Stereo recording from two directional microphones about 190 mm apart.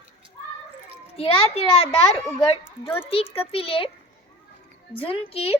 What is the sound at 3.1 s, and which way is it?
Speech, 30° left (ahead or behind).